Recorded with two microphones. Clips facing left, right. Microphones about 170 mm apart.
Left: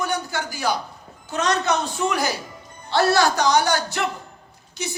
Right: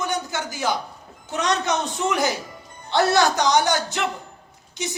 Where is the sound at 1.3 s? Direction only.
20° right (ahead or behind).